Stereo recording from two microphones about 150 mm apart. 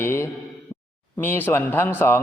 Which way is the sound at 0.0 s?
15° left (ahead or behind).